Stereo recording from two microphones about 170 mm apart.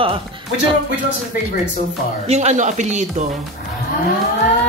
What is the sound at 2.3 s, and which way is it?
Speech, 40° right (ahead or behind).